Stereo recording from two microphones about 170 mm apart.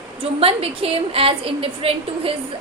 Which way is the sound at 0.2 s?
35° right (ahead or behind).